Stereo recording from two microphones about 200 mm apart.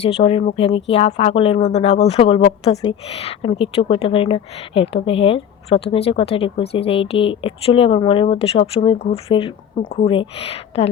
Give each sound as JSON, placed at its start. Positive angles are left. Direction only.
{"t": 0.0, "sound": "a woman's voice", "side_deg": 30}